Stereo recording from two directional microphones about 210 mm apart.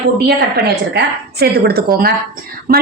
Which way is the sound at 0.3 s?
50° right (ahead or behind).